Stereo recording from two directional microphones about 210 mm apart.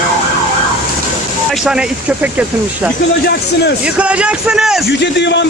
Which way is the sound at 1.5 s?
5° right (ahead or behind).